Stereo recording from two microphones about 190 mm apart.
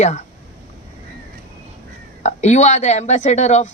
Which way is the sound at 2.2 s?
35° left (ahead or behind).